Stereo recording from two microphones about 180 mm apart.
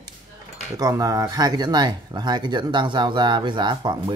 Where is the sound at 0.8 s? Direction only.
20° right (ahead or behind).